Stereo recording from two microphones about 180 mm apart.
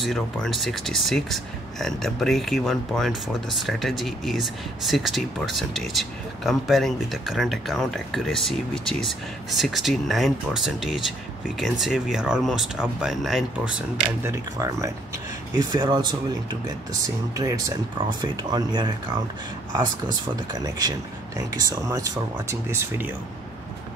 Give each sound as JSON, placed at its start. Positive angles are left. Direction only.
{"t": 0.0, "sound": "speech", "side_deg": 0}
{"t": 14.2, "sound": "speech", "side_deg": -15}
{"t": 20.5, "sound": "speech", "side_deg": -20}